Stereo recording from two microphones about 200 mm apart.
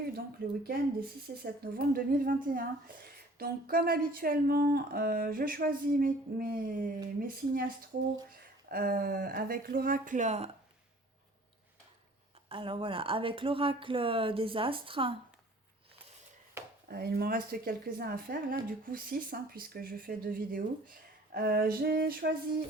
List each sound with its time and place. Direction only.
0.7 s a woman's voice: 50° right (ahead or behind)
12.5 s speech: 25° right (ahead or behind)
16.9 s a woman's voice: 50° right (ahead or behind)